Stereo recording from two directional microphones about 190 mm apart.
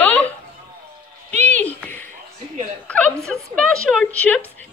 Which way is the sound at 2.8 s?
5° left (ahead or behind).